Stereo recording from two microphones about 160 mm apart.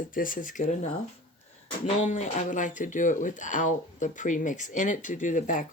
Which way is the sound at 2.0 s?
50° left (ahead or behind).